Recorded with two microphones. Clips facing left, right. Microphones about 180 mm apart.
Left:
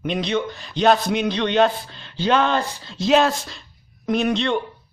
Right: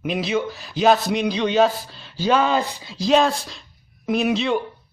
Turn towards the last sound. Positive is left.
turn(degrees=-5)  # may be behind; listen again after turning